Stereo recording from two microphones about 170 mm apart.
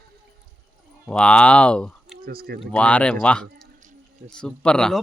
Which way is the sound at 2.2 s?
60° right (ahead or behind).